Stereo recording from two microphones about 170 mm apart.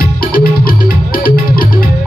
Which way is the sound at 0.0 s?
60° left (ahead or behind).